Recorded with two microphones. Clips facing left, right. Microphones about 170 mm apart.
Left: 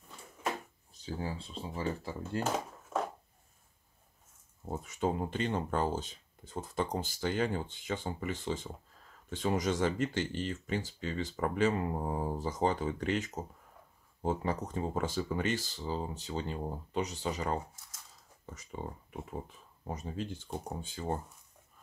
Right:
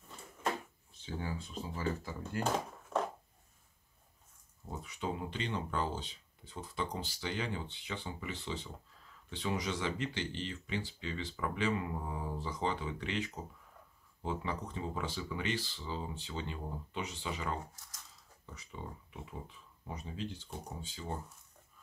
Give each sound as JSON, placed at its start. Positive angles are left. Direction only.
{"t": 0.9, "sound": "speech", "side_deg": 35}
{"t": 4.6, "sound": "speech", "side_deg": 45}